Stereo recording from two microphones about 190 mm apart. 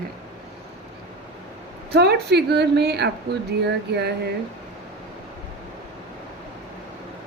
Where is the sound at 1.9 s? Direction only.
60° right (ahead or behind).